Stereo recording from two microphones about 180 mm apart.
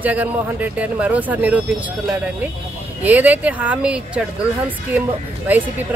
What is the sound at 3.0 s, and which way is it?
Speech, 10° right (ahead or behind).